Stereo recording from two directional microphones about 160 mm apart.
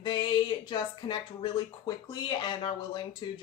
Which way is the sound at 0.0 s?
30° left (ahead or behind).